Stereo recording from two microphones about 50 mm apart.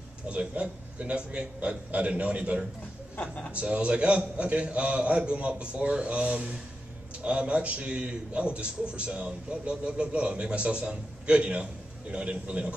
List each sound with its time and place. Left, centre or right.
0.3 s a man's voice: right
3.2 s a man's voice: left
3.5 s a man's voice: right